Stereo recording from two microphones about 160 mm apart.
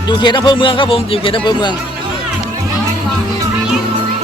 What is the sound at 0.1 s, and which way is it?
Speech, 30° left (ahead or behind).